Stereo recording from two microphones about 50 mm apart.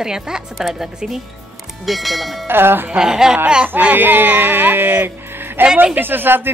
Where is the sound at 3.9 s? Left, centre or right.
Right.